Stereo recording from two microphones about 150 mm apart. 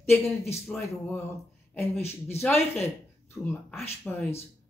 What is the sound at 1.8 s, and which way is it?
Speech, 15° left (ahead or behind).